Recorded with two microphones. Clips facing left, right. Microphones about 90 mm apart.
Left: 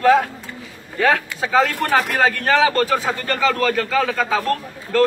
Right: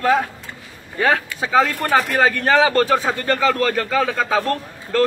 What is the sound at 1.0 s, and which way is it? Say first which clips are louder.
Speech: left 1 dB; 20° right (ahead or behind).